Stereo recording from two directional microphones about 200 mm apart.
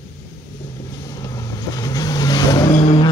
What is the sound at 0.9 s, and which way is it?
Vehicle, 20° left (ahead or behind).